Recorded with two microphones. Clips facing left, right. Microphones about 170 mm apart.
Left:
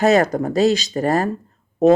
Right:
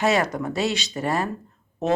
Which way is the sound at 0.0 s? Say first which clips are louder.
Left 6 dB; 40° left (ahead or behind).